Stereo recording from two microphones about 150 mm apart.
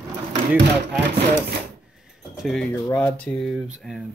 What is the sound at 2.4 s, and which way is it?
Speech, centre (ahead or behind).